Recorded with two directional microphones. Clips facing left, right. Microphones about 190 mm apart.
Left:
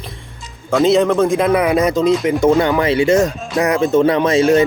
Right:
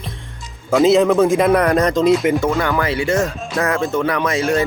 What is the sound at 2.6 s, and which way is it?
Speech, 20° left (ahead or behind).